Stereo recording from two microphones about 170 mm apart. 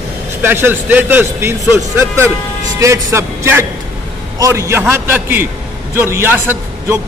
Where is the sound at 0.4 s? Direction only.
15° right (ahead or behind).